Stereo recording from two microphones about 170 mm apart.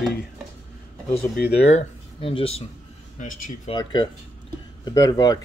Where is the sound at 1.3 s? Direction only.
70° left (ahead or behind).